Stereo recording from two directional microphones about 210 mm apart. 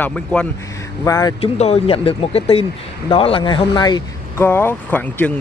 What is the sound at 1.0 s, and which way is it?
Speech, 15° left (ahead or behind).